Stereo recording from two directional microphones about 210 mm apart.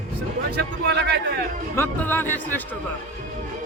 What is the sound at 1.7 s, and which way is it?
Music, 10° left (ahead or behind).